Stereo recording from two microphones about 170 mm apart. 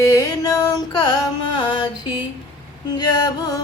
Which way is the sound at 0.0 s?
20° left (ahead or behind).